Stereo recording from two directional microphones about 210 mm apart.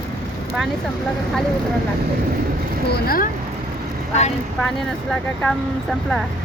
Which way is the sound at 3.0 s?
45° left (ahead or behind).